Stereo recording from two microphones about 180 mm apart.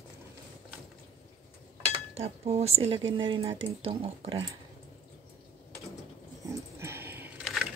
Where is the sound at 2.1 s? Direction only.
35° right (ahead or behind).